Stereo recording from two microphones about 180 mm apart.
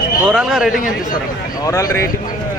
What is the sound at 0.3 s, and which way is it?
Speech, 5° right (ahead or behind).